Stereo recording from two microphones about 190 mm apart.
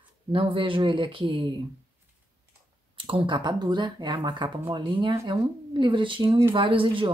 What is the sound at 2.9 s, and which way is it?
Speech, 30° right (ahead or behind).